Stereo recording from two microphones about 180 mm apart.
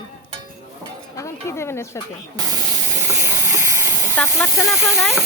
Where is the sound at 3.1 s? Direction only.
15° right (ahead or behind).